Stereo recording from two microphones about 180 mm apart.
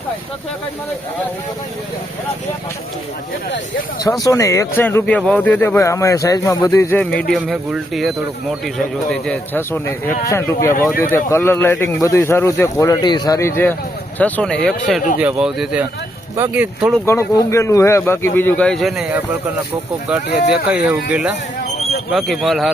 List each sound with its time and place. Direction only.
4.2 s speech: 15° left (ahead or behind)
7.0 s speech: 5° left (ahead or behind)
17.1 s speech: 15° left (ahead or behind); by 19.2 s 5° right (ahead or behind)
20.5 s speech: 5° right (ahead or behind)